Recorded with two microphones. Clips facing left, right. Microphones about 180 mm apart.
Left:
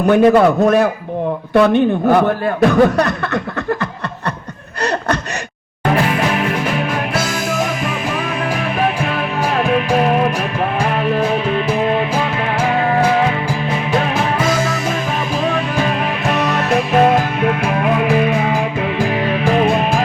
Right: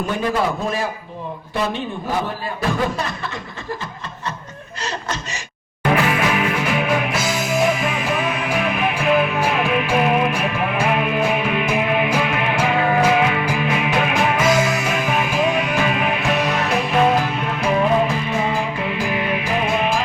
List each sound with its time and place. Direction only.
0.0 s a man's voice: 65° left (ahead or behind)
6.1 s music: 45° left (ahead or behind)
9.9 s music: 40° left (ahead or behind)
12.6 s music: 20° right (ahead or behind)
16.4 s music: 45° left (ahead or behind)